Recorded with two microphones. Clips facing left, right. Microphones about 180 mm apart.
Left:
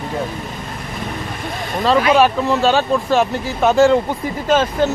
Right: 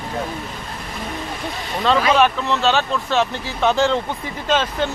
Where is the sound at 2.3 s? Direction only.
45° left (ahead or behind).